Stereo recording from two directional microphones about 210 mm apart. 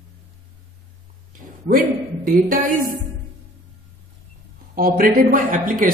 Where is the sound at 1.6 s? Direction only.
45° right (ahead or behind).